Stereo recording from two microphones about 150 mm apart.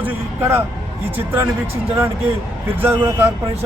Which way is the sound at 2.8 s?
15° right (ahead or behind).